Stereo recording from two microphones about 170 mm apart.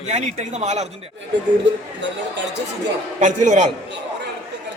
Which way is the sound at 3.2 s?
45° right (ahead or behind).